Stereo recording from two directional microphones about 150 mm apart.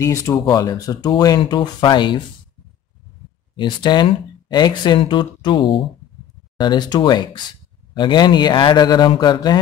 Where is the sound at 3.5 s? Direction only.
30° left (ahead or behind).